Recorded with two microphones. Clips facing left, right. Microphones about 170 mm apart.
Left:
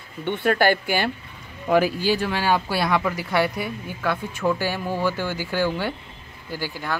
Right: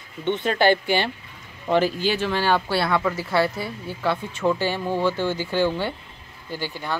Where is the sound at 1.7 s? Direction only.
10° left (ahead or behind).